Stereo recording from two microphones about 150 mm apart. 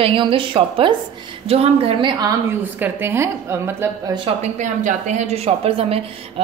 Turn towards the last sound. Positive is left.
turn(degrees=-40)  # may be behind; listen again after turning